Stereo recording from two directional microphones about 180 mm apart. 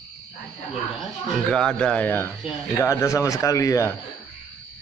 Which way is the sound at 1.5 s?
5° left (ahead or behind).